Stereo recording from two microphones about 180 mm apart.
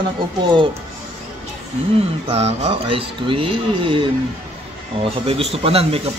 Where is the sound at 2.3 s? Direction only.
35° right (ahead or behind).